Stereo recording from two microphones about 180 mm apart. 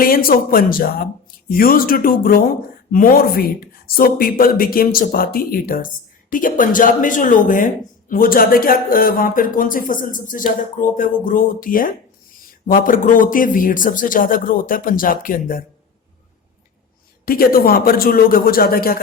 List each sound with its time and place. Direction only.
0.0 s speech: 55° left (ahead or behind)
17.2 s a man's voice: 55° left (ahead or behind)